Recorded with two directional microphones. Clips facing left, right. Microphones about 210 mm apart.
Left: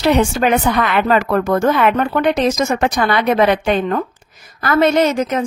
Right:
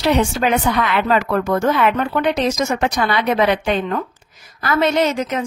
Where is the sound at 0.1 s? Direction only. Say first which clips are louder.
Left 2 dB; 50° left (ahead or behind).